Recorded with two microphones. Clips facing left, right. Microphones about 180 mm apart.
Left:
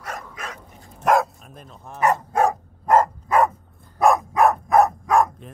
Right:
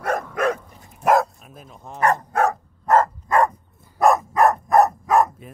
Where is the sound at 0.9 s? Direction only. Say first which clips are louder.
Right 1 dB; 5° right (ahead or behind).